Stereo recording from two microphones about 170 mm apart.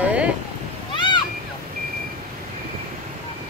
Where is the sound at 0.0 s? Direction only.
5° right (ahead or behind).